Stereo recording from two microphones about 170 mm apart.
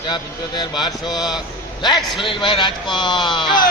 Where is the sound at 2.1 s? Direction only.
30° left (ahead or behind).